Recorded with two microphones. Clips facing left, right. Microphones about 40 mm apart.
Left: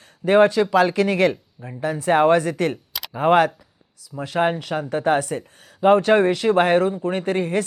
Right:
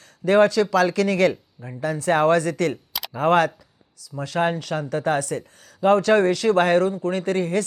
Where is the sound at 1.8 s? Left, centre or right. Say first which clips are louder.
Left 2 dB; left.